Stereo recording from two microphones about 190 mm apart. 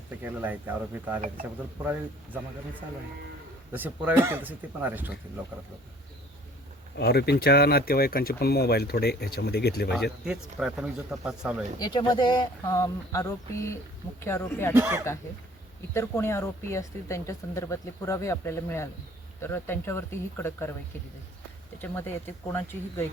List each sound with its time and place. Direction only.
0.2 s speech: 10° right (ahead or behind)
3.7 s speech: 10° right (ahead or behind)
6.9 s speech: 60° left (ahead or behind)
10.2 s speech: 5° right (ahead or behind)
11.8 s speech: 20° left (ahead or behind)
14.7 s speech: 15° right (ahead or behind)
16.0 s speech: 15° left (ahead or behind)
21.8 s speech: 10° left (ahead or behind)